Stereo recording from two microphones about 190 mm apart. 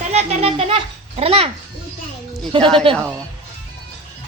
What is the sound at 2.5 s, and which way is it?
Speech, 25° right (ahead or behind).